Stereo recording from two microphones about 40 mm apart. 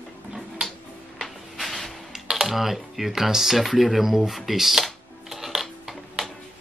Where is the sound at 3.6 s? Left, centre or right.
Centre.